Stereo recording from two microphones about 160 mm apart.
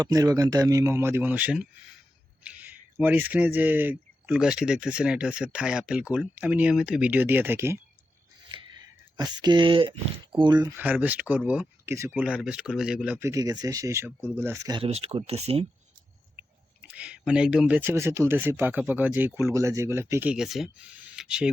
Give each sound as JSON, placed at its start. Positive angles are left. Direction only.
{"t": 0.0, "sound": "a man's voice", "side_deg": -25}
{"t": 8.5, "sound": "a sound", "side_deg": -30}
{"t": 9.1, "sound": "a man's voice", "side_deg": -25}
{"t": 10.8, "sound": "speech", "side_deg": -10}
{"t": 13.2, "sound": "a man's voice", "side_deg": -20}
{"t": 14.8, "sound": "speech", "side_deg": -40}
{"t": 16.8, "sound": "speech", "side_deg": -10}